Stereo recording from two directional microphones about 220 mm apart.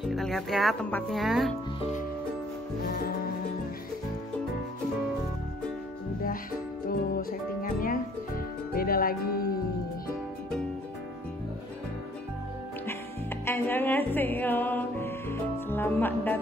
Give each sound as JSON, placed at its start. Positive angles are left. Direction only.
{"t": 0.0, "sound": "speech", "side_deg": 0}
{"t": 2.9, "sound": "music", "side_deg": 45}
{"t": 6.9, "sound": "music", "side_deg": 40}
{"t": 13.5, "sound": "music", "side_deg": 10}